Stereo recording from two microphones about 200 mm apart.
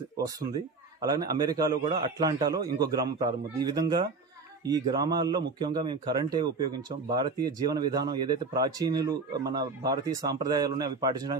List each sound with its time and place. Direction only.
1.0 s speech: 20° right (ahead or behind)